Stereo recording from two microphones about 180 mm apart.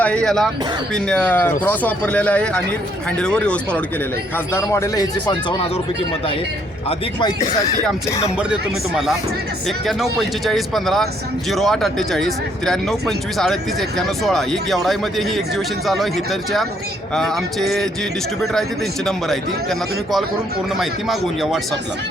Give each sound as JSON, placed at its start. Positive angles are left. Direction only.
{"t": 0.0, "sound": "speech", "side_deg": 5}
{"t": 7.2, "sound": "speech", "side_deg": 20}
{"t": 9.6, "sound": "speech", "side_deg": 0}
{"t": 20.7, "sound": "speech", "side_deg": 0}